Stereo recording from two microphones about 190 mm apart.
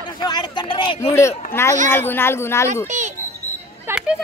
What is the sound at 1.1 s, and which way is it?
Speech, 15° left (ahead or behind).